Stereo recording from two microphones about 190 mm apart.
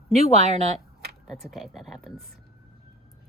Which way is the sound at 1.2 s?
Centre (ahead or behind).